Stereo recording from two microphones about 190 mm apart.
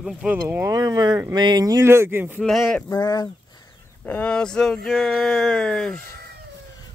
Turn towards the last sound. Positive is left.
turn(degrees=5)  # may be behind; listen again after turning